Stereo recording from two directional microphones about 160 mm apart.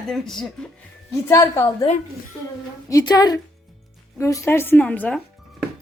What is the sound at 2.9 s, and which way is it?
A woman's voice, 25° left (ahead or behind).